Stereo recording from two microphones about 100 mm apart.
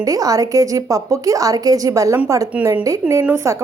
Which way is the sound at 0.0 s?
35° right (ahead or behind).